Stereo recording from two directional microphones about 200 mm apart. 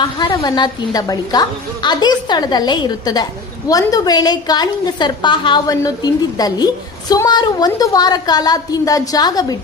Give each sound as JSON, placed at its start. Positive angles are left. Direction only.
{"t": 0.0, "sound": "a woman's voice", "side_deg": 20}